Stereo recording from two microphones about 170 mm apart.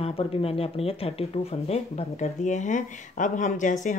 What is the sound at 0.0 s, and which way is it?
Speech, 35° left (ahead or behind).